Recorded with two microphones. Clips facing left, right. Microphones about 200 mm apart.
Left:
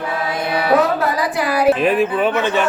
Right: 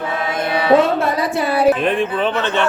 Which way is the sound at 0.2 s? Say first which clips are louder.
Right 1 dB; 25° right (ahead or behind).